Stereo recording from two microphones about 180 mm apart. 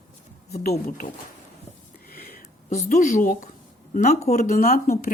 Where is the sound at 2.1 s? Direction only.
60° left (ahead or behind).